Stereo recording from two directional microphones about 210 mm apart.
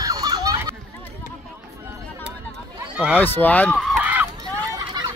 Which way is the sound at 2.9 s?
5° right (ahead or behind).